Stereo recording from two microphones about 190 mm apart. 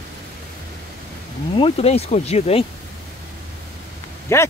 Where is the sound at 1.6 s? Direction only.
30° left (ahead or behind).